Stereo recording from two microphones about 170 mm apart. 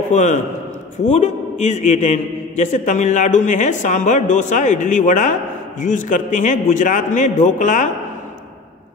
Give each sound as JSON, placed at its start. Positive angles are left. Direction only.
{"t": 0.1, "sound": "a man's voice", "side_deg": 45}